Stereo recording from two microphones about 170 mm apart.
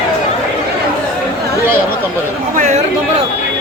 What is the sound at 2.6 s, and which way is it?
Chatter, 45° right (ahead or behind).